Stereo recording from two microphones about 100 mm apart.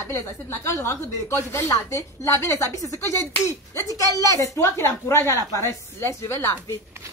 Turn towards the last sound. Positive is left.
turn(degrees=25)  # may be behind; listen again after turning